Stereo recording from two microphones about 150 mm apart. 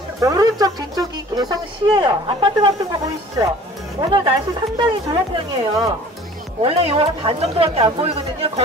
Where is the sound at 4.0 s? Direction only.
30° right (ahead or behind).